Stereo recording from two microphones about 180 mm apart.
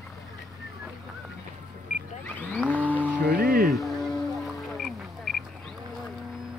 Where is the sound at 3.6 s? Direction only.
Centre (ahead or behind).